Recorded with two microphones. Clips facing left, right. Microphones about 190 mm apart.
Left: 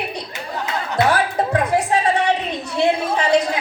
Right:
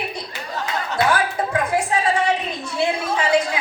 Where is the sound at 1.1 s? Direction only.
35° left (ahead or behind).